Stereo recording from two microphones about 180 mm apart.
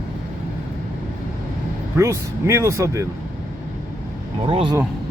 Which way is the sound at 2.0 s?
15° right (ahead or behind).